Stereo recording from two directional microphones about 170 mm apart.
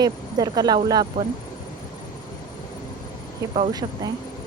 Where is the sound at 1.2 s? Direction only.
35° right (ahead or behind).